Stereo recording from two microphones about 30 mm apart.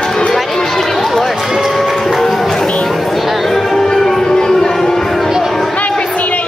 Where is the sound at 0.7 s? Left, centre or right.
Centre.